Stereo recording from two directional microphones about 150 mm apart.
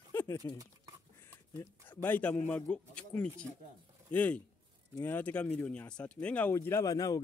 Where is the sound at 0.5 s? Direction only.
25° right (ahead or behind).